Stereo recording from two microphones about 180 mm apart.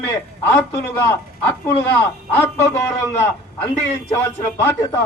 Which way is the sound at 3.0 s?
15° left (ahead or behind).